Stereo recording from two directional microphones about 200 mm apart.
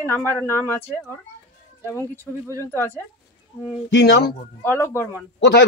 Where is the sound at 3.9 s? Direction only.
60° left (ahead or behind).